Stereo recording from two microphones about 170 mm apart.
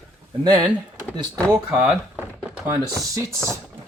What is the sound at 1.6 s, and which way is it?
Speech, 5° right (ahead or behind).